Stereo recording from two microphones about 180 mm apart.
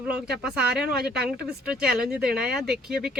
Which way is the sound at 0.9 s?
60° right (ahead or behind).